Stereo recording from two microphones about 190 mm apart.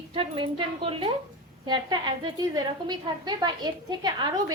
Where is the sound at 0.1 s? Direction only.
25° right (ahead or behind).